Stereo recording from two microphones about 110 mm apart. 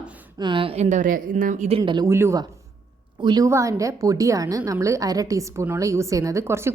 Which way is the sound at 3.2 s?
40° right (ahead or behind).